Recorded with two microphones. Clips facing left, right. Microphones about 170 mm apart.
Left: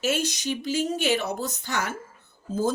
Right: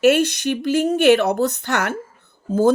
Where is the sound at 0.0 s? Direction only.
65° right (ahead or behind).